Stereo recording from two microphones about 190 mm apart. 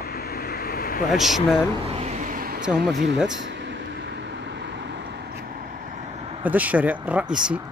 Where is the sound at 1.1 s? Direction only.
Centre (ahead or behind).